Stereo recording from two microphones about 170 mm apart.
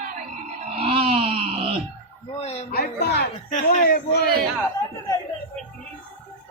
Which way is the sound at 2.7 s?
65° left (ahead or behind).